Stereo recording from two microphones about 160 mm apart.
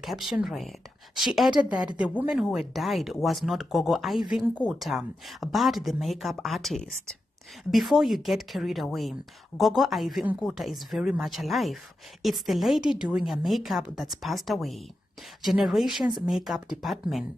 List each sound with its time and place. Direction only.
0.0 s speech: centre (ahead or behind)